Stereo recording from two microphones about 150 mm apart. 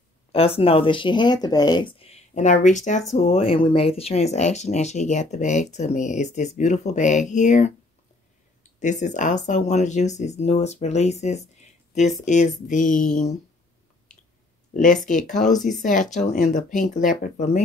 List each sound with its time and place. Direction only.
0.3 s speech: 40° left (ahead or behind)
3.1 s speech: 45° left (ahead or behind)
8.7 s speech: 55° left (ahead or behind)
14.7 s speech: 60° left (ahead or behind)